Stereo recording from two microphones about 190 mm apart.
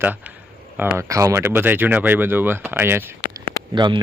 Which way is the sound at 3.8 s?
25° right (ahead or behind).